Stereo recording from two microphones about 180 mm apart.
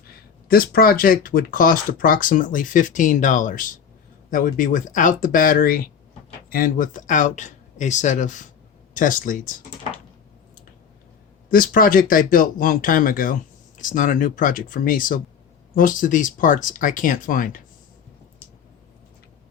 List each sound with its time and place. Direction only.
0.4 s speech: 55° left (ahead or behind)
11.5 s speech: 50° left (ahead or behind)